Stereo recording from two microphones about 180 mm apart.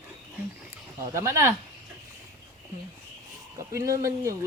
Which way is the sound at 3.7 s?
15° right (ahead or behind).